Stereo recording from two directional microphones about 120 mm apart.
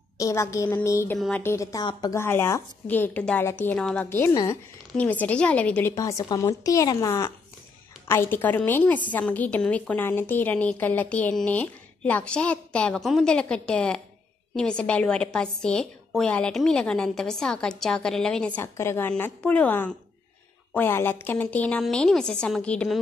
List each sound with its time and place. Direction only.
0.2 s speech: 25° left (ahead or behind)
1.1 s a woman's voice: 5° left (ahead or behind)
1.4 s a woman's voice: 25° left (ahead or behind)
2.1 s a woman's voice: 20° left (ahead or behind)
4.3 s a woman's voice: 30° left (ahead or behind)
4.9 s a woman's voice: 15° left (ahead or behind)
5.9 s speech: 25° left (ahead or behind)
8.1 s a woman's voice: 15° left (ahead or behind)
18.6 s a woman's voice: 20° left (ahead or behind)